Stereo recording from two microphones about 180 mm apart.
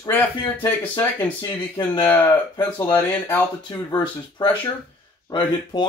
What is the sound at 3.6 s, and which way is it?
Speech, 25° left (ahead or behind).